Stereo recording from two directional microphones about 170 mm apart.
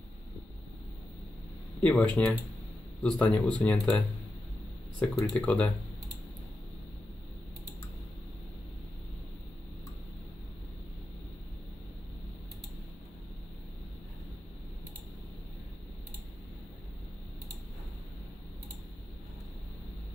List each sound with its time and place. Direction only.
1.8 s speech: 10° left (ahead or behind)
5.0 s speech: centre (ahead or behind)